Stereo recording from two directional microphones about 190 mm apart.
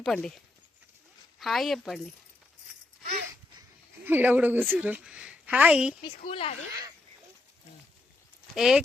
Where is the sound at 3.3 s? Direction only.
15° right (ahead or behind).